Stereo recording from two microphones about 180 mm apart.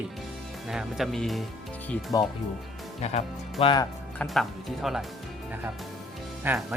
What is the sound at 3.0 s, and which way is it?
Speech, 35° left (ahead or behind).